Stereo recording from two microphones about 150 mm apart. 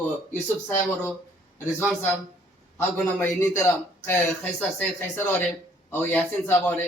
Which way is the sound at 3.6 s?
15° left (ahead or behind).